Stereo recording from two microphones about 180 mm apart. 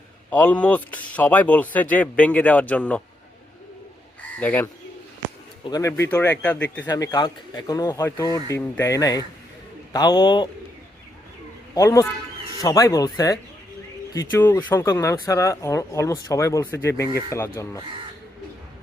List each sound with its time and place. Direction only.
0.3 s speech: 10° left (ahead or behind)
4.4 s speech: 10° left (ahead or behind)
6.8 s speech: 20° left (ahead or behind)
11.7 s speech: 20° left (ahead or behind)